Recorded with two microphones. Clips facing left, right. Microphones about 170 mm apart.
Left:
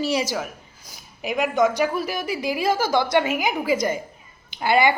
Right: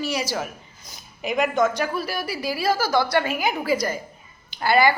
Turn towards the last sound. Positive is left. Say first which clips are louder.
# even
turn(degrees=20)  # may be behind; listen again after turning